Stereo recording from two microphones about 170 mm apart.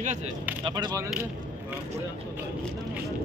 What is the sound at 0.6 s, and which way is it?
Speech, 25° right (ahead or behind).